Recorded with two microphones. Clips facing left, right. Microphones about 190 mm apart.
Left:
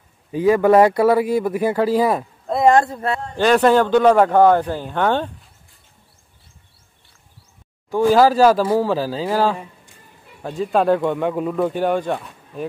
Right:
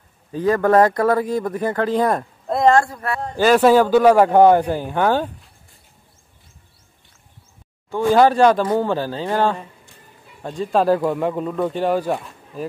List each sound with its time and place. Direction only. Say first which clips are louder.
0.3 s speech: left 2 dB; 10° left (ahead or behind)
2.7 s speech: left 1 dB; 20° left (ahead or behind)
3.3 s a man's voice: right 1 dB; 5° right (ahead or behind)
7.9 s speech: left 1 dB; centre (ahead or behind)